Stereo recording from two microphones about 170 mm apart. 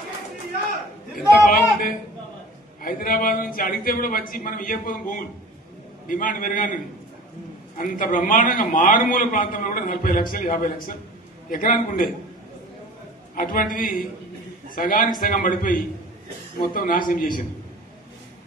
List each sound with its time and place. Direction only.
1.4 s a man's voice: 55° left (ahead or behind)
7.7 s a man's voice: 50° left (ahead or behind)
13.3 s a man's voice: 55° left (ahead or behind)